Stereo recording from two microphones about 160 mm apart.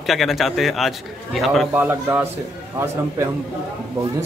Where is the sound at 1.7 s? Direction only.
15° right (ahead or behind).